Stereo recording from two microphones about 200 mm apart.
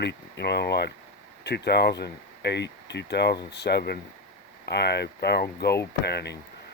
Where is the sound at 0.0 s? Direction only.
55° left (ahead or behind).